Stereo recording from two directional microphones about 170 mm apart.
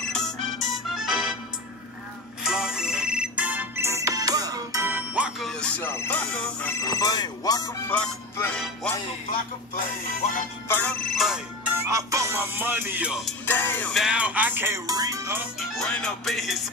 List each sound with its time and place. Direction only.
0.1 s music: centre (ahead or behind)
2.4 s ringtone: 5° right (ahead or behind)
5.5 s music: 5° left (ahead or behind)
6.8 s speech: 20° left (ahead or behind)
7.9 s music: 5° left (ahead or behind)
10.7 s music: 10° left (ahead or behind)
11.7 s speech: 20° right (ahead or behind)
13.5 s music: 10° left (ahead or behind)
13.9 s speech: 5° right (ahead or behind)
15.7 s music: 5° left (ahead or behind)